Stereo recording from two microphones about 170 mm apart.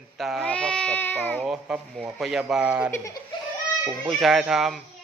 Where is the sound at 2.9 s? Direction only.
20° left (ahead or behind).